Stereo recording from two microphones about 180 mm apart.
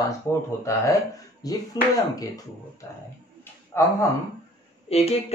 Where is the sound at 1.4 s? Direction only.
20° left (ahead or behind).